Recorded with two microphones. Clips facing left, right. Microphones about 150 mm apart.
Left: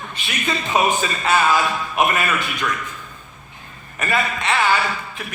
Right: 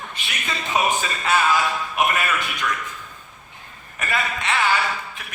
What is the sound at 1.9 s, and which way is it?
Speech, 30° left (ahead or behind).